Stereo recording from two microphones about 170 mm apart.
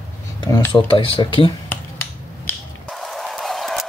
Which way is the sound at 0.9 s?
30° left (ahead or behind).